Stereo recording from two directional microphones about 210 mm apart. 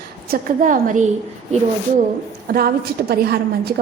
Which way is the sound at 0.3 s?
40° right (ahead or behind).